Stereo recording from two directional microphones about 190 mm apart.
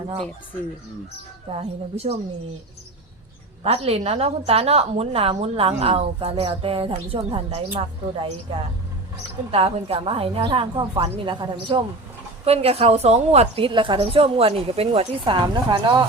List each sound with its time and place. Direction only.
1.5 s a woman's voice: 30° right (ahead or behind)
3.6 s a woman's voice: 30° right (ahead or behind)
9.5 s a woman's voice: 30° right (ahead or behind)